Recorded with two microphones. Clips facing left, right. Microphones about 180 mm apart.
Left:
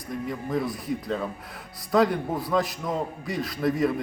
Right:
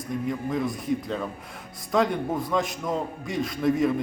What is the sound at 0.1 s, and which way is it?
A man's voice, centre (ahead or behind).